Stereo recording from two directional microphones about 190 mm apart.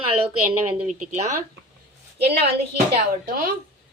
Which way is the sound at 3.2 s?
50° right (ahead or behind).